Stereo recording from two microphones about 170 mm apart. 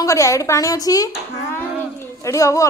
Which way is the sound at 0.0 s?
20° left (ahead or behind).